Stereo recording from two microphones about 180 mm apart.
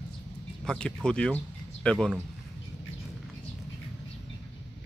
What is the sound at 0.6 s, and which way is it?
Speech, 5° left (ahead or behind).